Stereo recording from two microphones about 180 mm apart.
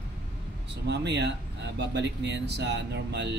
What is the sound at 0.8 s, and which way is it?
Speech, 70° right (ahead or behind).